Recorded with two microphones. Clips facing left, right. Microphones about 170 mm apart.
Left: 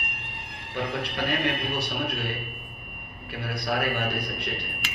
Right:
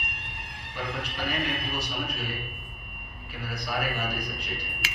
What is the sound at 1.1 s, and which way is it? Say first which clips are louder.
A man's voice: left 4 dB; 65° left (ahead or behind).